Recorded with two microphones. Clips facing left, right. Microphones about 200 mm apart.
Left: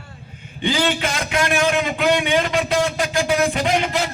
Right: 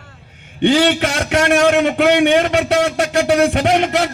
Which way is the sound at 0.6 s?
70° right (ahead or behind).